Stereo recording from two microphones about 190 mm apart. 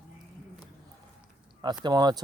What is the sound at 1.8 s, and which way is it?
Speech, 20° right (ahead or behind).